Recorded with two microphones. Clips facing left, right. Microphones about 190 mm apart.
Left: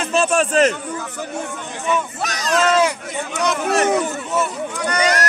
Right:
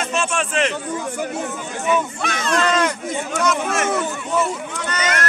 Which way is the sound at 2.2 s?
40° left (ahead or behind).